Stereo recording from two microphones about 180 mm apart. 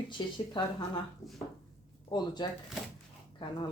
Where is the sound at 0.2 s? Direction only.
25° left (ahead or behind).